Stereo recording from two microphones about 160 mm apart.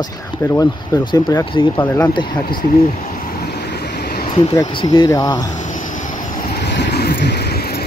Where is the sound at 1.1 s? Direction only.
30° left (ahead or behind).